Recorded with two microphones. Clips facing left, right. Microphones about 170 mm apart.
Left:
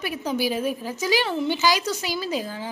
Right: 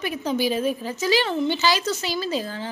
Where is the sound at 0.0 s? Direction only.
10° left (ahead or behind).